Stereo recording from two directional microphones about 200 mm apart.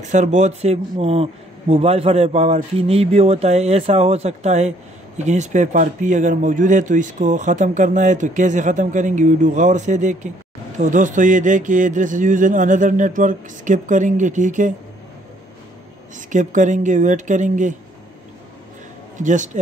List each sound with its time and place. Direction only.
0.1 s a man's voice: 35° right (ahead or behind)
16.3 s a man's voice: 40° right (ahead or behind)
19.1 s a man's voice: 40° right (ahead or behind)